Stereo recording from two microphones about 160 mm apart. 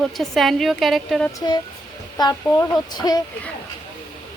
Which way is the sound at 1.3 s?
25° left (ahead or behind).